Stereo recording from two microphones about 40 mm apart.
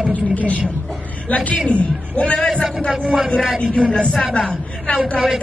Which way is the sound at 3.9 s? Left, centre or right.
Left.